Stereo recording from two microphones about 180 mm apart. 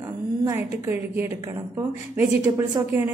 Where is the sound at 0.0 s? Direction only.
15° right (ahead or behind).